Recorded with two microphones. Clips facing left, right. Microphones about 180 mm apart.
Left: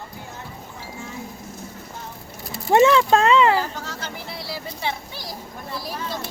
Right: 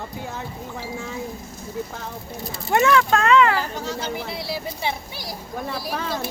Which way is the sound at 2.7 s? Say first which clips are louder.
Left 3 dB; 25° left (ahead or behind).